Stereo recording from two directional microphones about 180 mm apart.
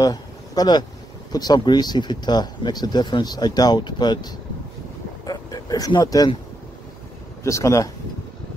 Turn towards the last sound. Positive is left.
turn(degrees=15)  # may be behind; listen again after turning